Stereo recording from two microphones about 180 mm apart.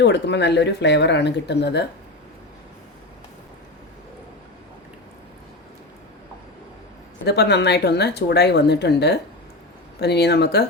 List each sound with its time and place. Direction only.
0.0 s speech: 75° left (ahead or behind)
7.3 s speech: 70° left (ahead or behind)